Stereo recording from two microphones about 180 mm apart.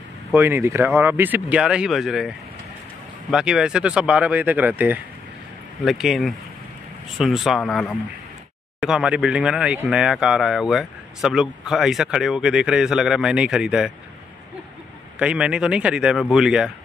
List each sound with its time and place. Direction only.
0.3 s speech: 15° right (ahead or behind)
15.1 s speech: 5° right (ahead or behind)